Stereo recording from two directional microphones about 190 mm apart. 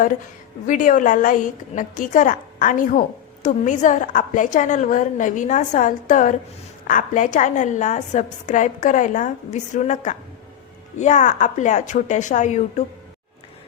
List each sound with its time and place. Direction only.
0.7 s a woman's voice: 40° left (ahead or behind)